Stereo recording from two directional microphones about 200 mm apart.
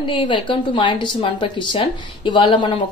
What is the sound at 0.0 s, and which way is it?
Speech, 25° left (ahead or behind).